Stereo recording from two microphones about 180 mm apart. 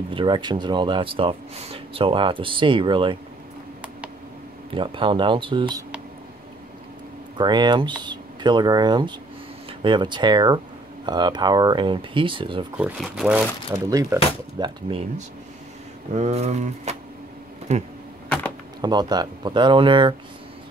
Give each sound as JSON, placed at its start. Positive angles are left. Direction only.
{"t": 0.1, "sound": "speech", "side_deg": -25}
{"t": 4.7, "sound": "speech", "side_deg": -30}
{"t": 7.3, "sound": "speech", "side_deg": -25}
{"t": 12.7, "sound": "speech", "side_deg": -5}
{"t": 13.8, "sound": "speech", "side_deg": -20}
{"t": 14.9, "sound": "speech", "side_deg": -35}
{"t": 18.8, "sound": "speech", "side_deg": -20}